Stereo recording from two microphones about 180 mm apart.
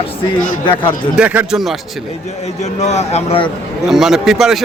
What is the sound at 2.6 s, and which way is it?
Speech, 40° left (ahead or behind).